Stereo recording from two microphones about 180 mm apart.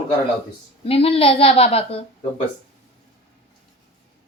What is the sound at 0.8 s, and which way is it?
A woman's voice, 30° left (ahead or behind).